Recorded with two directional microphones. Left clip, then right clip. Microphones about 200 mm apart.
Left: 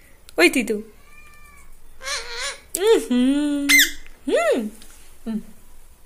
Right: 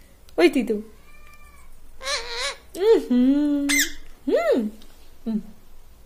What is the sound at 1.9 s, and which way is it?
Babbling, 40° right (ahead or behind).